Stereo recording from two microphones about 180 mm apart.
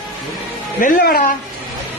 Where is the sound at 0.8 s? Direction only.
55° left (ahead or behind).